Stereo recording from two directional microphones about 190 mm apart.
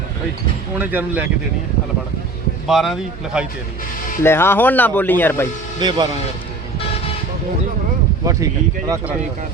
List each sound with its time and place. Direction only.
0.8 s speech: 10° right (ahead or behind)
2.6 s speech: centre (ahead or behind)
4.2 s speech: 10° left (ahead or behind)
5.8 s speech: 25° right (ahead or behind)
8.2 s speech: 15° right (ahead or behind)